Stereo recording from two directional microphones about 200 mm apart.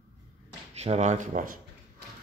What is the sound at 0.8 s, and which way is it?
Speech, 35° right (ahead or behind).